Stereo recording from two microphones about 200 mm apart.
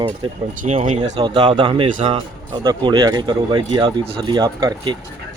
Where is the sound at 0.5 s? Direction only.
35° right (ahead or behind).